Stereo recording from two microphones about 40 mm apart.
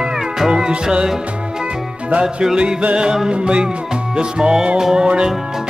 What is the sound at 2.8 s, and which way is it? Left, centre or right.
Music, right.